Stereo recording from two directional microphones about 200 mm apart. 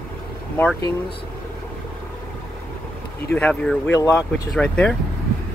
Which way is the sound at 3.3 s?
5° left (ahead or behind).